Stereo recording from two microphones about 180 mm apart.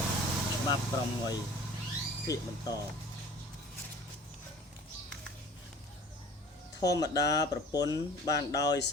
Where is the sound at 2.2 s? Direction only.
20° left (ahead or behind).